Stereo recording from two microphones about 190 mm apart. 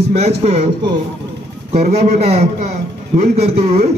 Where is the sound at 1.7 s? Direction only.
35° right (ahead or behind).